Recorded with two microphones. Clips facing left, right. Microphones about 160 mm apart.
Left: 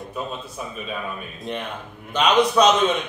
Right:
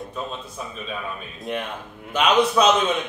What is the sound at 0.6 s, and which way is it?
A man's voice, 5° left (ahead or behind).